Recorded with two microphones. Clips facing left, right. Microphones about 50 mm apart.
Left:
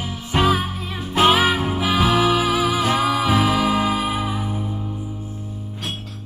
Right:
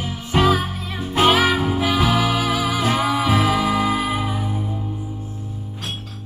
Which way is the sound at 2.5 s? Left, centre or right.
Left.